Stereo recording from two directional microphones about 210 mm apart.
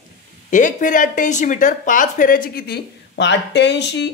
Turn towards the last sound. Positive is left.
turn(degrees=55)  # may be behind; listen again after turning